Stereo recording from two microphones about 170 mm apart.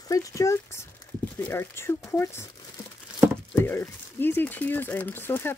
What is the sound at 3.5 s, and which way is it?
Speech, 15° left (ahead or behind).